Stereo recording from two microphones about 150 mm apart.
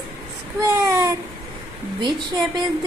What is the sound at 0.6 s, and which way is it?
Speech, 25° right (ahead or behind).